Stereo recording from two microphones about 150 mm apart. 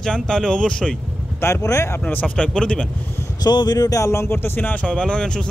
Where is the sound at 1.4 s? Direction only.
20° left (ahead or behind).